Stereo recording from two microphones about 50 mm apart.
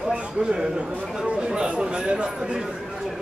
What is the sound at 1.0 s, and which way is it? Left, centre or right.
Speech, centre.